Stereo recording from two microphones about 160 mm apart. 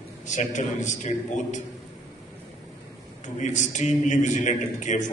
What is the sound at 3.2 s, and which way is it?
A man's voice, 50° left (ahead or behind).